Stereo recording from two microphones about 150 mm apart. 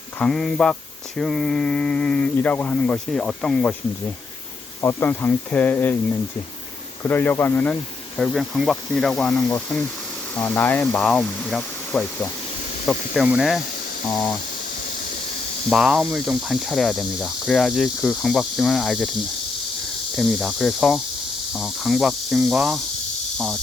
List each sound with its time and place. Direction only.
0.2 s mantra: 5° left (ahead or behind)
4.8 s speech: 15° left (ahead or behind)
7.0 s speech: 15° left (ahead or behind)
8.2 s mantra: centre (ahead or behind)
9.6 s speech: 10° left (ahead or behind)
13.2 s mantra: 5° right (ahead or behind)
14.1 s speech: 25° left (ahead or behind)
15.7 s mantra: 5° right (ahead or behind)
20.1 s mantra: centre (ahead or behind)